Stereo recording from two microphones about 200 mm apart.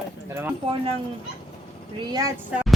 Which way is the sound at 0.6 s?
30° right (ahead or behind).